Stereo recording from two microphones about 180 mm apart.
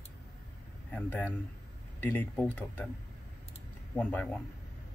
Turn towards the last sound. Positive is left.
turn(degrees=10)  # may be behind; listen again after turning